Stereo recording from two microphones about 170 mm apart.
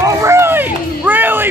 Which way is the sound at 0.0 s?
15° right (ahead or behind).